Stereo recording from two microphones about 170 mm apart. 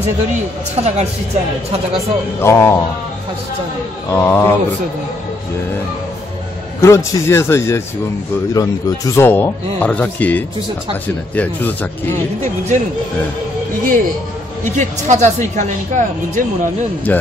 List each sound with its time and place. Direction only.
0.0 s speech: 40° right (ahead or behind)
2.4 s speech: 15° left (ahead or behind)
4.1 s speech: 15° left (ahead or behind)
6.8 s speech: 15° left (ahead or behind)
14.8 s speech: 45° right (ahead or behind)
17.1 s speech: 10° left (ahead or behind)